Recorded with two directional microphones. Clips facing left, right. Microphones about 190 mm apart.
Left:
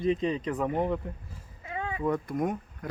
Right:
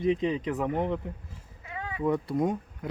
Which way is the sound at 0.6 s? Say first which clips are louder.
Left 1 dB; 10° left (ahead or behind).